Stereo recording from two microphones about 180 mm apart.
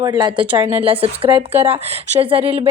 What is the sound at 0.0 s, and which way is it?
A woman's voice, 20° right (ahead or behind).